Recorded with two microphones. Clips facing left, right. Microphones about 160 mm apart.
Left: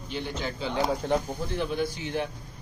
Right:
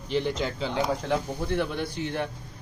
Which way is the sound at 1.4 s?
60° right (ahead or behind).